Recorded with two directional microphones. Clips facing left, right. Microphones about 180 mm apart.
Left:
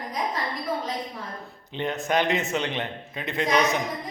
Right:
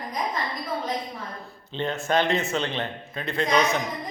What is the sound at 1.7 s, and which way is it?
Speech, 15° left (ahead or behind).